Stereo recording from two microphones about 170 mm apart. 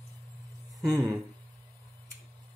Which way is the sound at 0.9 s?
20° right (ahead or behind).